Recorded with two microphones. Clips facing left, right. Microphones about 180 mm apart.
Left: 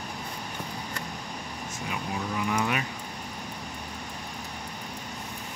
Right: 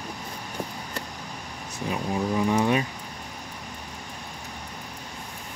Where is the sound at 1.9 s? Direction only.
30° right (ahead or behind).